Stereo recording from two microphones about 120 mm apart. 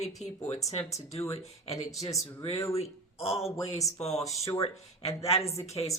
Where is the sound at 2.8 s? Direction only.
55° left (ahead or behind).